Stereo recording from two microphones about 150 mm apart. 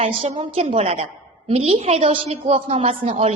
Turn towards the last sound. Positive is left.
turn(degrees=-45)  # may be behind; listen again after turning